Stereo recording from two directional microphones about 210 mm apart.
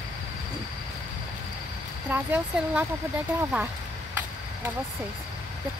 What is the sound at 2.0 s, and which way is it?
Speech, 10° right (ahead or behind).